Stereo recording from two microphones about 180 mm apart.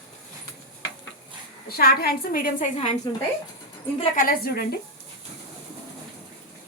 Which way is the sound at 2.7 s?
40° left (ahead or behind).